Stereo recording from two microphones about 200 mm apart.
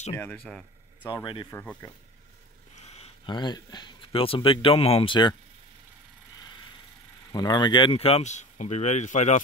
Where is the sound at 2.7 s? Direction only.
30° left (ahead or behind).